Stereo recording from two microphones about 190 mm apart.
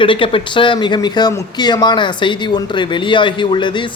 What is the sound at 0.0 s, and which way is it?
Speech, 25° left (ahead or behind).